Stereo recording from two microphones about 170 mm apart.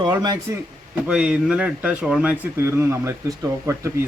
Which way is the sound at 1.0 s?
5° right (ahead or behind).